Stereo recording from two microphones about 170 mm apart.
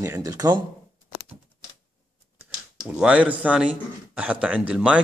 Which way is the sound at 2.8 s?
5° right (ahead or behind).